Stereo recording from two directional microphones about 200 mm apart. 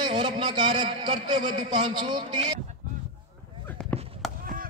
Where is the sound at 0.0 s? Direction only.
20° right (ahead or behind).